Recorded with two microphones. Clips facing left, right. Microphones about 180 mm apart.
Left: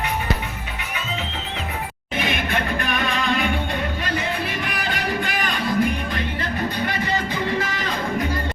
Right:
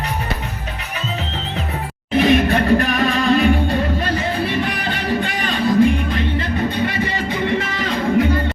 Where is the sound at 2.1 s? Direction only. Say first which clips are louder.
Right 10 dB; 35° right (ahead or behind).